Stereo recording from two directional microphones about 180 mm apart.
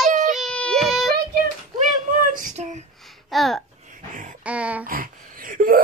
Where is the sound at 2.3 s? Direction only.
45° right (ahead or behind).